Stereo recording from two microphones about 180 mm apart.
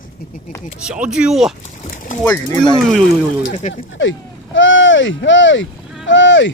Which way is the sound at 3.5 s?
40° left (ahead or behind).